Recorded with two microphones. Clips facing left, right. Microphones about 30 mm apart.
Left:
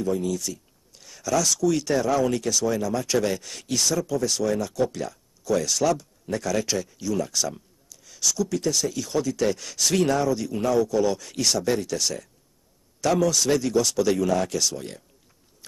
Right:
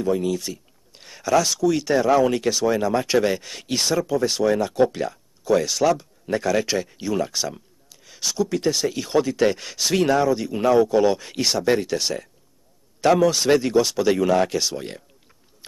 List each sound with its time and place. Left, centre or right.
0.0 s speech: right